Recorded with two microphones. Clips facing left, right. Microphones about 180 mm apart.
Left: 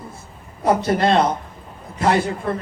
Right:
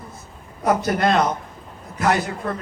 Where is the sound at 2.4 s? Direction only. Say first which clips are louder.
Left 3 dB; 30° left (ahead or behind).